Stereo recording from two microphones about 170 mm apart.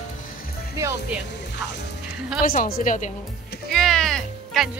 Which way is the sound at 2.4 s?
55° left (ahead or behind).